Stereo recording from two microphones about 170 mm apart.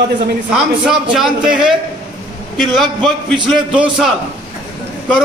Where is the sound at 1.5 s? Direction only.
5° right (ahead or behind).